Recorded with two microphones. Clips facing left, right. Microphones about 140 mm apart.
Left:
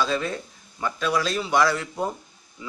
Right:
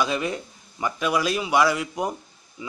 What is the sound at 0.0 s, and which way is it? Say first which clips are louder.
A man's voice: even; 15° right (ahead or behind).